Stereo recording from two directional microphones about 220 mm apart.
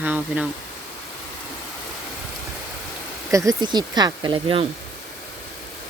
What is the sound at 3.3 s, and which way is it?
Speech, 15° right (ahead or behind).